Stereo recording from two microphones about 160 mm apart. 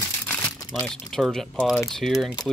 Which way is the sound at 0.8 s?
5° left (ahead or behind).